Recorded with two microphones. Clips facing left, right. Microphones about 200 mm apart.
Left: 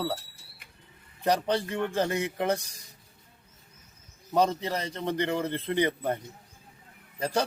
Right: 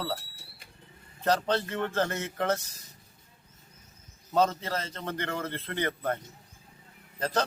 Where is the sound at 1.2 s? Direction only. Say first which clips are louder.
Left 1 dB; 15° left (ahead or behind).